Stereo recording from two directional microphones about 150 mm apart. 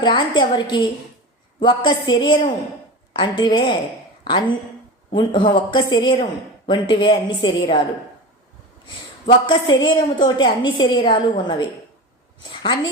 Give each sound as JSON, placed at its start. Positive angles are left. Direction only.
{"t": 0.0, "sound": "a woman's voice", "side_deg": 30}
{"t": 9.2, "sound": "a woman's voice", "side_deg": 30}